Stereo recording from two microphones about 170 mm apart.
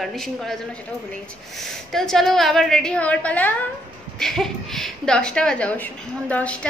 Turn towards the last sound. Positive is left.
turn(degrees=10)  # may be behind; listen again after turning